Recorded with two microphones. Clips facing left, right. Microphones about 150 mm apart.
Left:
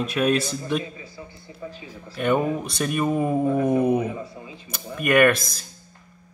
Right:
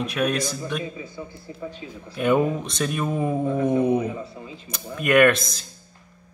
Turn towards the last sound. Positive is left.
turn(degrees=0)  # may be behind; listen again after turning